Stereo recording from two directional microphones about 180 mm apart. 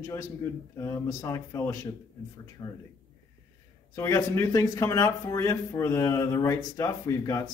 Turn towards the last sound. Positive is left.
turn(degrees=15)  # may be behind; listen again after turning